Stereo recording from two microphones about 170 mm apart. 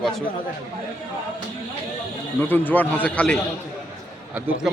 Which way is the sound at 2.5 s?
10° left (ahead or behind).